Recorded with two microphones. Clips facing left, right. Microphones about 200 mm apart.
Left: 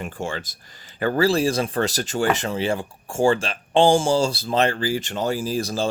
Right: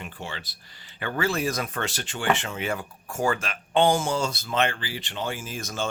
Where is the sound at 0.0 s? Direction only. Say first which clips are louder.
Left 8 dB; 45° left (ahead or behind).